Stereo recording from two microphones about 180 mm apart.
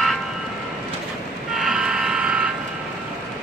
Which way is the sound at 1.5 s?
5° right (ahead or behind).